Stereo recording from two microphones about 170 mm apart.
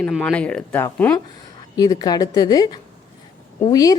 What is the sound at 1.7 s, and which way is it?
A woman's voice, 20° left (ahead or behind).